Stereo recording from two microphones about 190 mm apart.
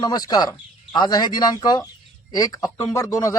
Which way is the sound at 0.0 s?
20° left (ahead or behind).